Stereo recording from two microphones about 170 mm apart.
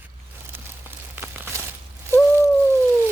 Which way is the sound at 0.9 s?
10° right (ahead or behind).